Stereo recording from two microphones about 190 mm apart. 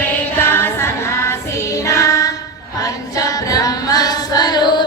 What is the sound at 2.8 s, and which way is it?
Singing, 20° left (ahead or behind).